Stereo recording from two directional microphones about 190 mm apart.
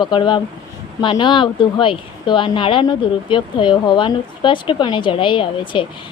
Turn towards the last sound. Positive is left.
turn(degrees=25)  # may be behind; listen again after turning